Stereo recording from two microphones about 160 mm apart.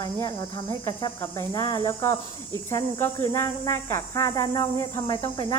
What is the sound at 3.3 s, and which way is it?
Speech, 20° left (ahead or behind).